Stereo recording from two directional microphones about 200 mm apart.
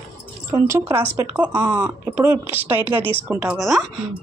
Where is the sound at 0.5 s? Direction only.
10° right (ahead or behind).